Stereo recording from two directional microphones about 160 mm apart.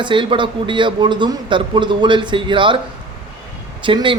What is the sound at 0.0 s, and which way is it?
A man's voice, 30° right (ahead or behind).